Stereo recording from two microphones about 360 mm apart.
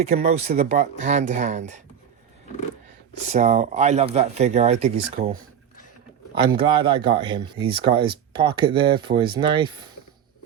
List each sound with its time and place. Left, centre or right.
0.0 s speech: right
3.2 s speech: centre